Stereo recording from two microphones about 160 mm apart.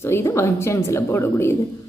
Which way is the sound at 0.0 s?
15° left (ahead or behind).